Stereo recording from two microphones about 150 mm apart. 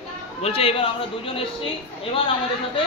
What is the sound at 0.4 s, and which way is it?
Speech, 40° left (ahead or behind).